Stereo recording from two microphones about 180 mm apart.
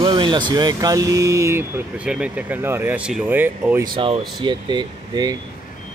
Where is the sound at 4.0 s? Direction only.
30° right (ahead or behind).